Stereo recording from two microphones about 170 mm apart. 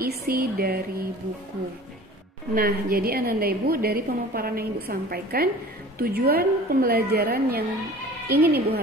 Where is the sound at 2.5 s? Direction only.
60° right (ahead or behind).